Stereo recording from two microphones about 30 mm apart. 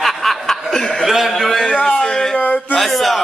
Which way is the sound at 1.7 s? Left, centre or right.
Left.